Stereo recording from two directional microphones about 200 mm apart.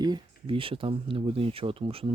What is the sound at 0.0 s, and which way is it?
Speech, 25° right (ahead or behind).